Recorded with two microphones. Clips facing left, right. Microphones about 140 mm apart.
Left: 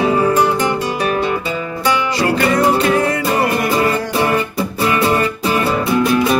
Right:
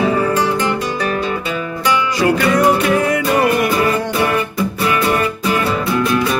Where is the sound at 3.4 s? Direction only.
25° left (ahead or behind).